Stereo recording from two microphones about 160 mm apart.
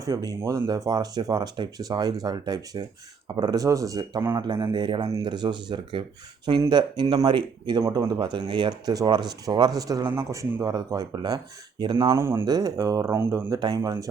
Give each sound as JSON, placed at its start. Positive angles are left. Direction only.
{"t": 0.0, "sound": "speech", "side_deg": -20}
{"t": 12.1, "sound": "speech", "side_deg": -15}